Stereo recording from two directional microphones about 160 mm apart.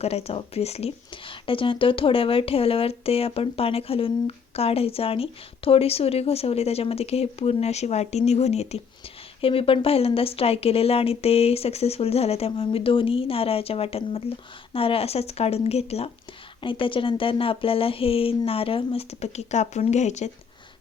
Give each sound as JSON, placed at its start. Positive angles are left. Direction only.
{"t": 0.0, "sound": "speech", "side_deg": 40}